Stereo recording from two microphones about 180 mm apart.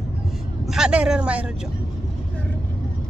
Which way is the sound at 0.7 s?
5° right (ahead or behind).